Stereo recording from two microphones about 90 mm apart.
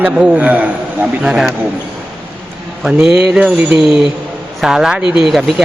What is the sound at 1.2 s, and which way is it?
Speech, 5° right (ahead or behind).